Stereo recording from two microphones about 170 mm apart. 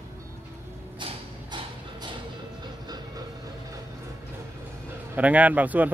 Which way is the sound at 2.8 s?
25° right (ahead or behind).